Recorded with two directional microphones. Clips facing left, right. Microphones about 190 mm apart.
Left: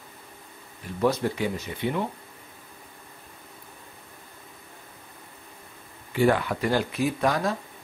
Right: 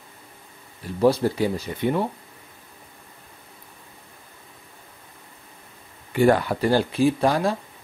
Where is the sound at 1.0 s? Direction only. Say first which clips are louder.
Right 5 dB; 35° right (ahead or behind).